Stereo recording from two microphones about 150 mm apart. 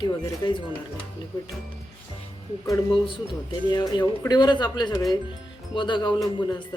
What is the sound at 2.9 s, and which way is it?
Speech, 35° left (ahead or behind).